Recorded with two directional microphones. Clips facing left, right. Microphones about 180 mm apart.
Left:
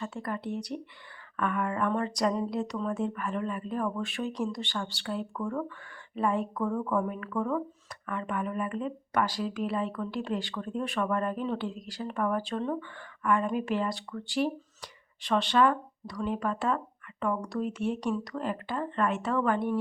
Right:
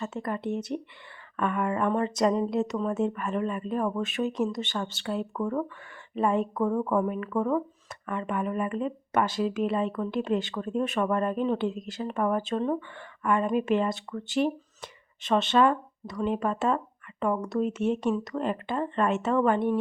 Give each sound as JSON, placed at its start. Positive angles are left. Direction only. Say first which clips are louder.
{"t": 0.0, "sound": "speech", "louder": "right 3 dB", "side_deg": -20}